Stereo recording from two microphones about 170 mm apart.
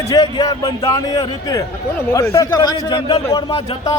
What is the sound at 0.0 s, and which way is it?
A man's voice, 20° left (ahead or behind).